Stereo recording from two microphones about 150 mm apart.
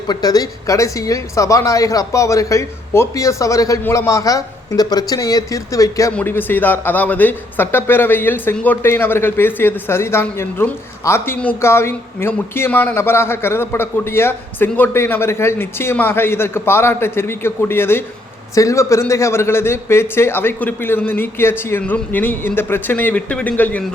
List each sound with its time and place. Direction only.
0.1 s a woman's voice: 25° left (ahead or behind)